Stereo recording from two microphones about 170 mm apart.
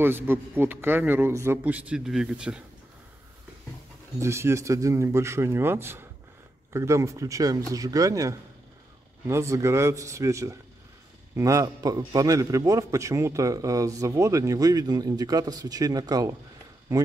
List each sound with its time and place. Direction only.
0.0 s a man's voice: 15° right (ahead or behind)
4.2 s a man's voice: 15° right (ahead or behind)